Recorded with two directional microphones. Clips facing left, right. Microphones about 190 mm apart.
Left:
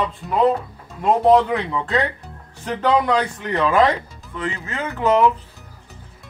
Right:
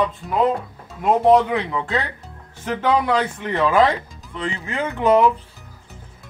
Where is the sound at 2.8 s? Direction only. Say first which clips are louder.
Left 1 dB; 10° right (ahead or behind).